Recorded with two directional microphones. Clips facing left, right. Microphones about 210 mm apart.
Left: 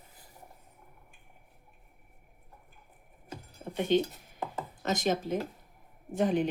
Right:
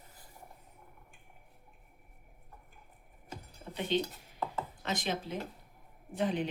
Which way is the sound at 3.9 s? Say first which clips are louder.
Left 6 dB; 50° left (ahead or behind).